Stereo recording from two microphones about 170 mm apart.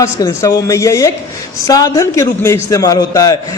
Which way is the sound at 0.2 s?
20° left (ahead or behind).